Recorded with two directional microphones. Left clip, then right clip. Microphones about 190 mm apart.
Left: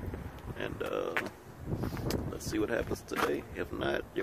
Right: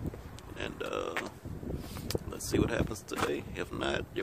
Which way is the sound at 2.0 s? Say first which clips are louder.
Right 2 dB; 15° right (ahead or behind).